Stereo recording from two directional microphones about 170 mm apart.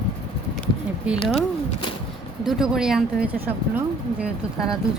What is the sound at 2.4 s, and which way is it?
Speech, centre (ahead or behind).